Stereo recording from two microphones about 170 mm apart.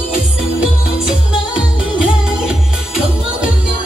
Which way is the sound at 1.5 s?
5° right (ahead or behind).